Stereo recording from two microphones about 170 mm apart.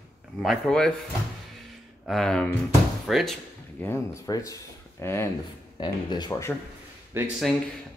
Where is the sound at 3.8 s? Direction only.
15° left (ahead or behind).